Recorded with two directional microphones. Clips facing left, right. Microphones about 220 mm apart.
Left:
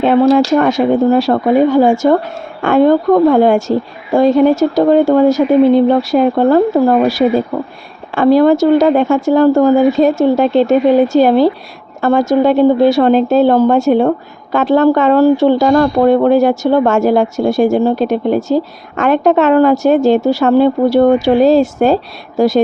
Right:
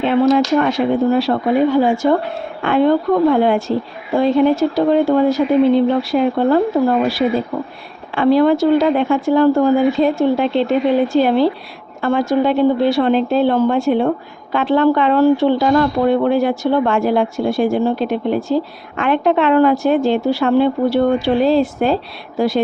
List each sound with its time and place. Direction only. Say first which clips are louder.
0.3 s speech: left 4 dB; 45° left (ahead or behind)